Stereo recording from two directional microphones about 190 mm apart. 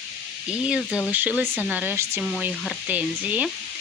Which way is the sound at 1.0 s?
10° right (ahead or behind).